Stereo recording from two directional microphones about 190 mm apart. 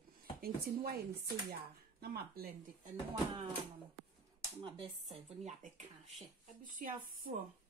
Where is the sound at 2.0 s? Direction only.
55° right (ahead or behind).